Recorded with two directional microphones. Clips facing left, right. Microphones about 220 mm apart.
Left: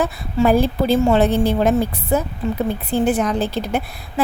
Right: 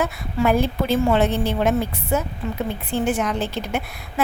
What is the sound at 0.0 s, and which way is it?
A woman's voice, 35° left (ahead or behind).